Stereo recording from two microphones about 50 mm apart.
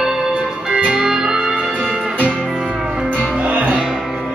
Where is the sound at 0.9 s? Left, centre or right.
Centre.